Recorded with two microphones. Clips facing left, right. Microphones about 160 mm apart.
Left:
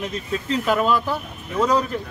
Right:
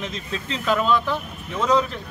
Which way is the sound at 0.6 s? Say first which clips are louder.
Right 1 dB; 10° left (ahead or behind).